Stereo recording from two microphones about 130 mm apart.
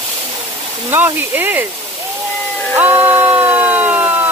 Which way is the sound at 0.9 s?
15° right (ahead or behind).